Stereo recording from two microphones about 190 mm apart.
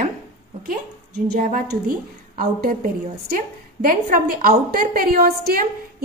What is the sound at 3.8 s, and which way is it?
A woman's voice, 50° right (ahead or behind).